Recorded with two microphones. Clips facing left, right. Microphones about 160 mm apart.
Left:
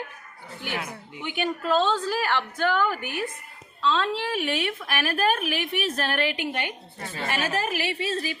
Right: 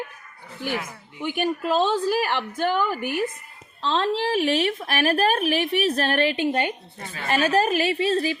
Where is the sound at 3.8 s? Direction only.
30° right (ahead or behind).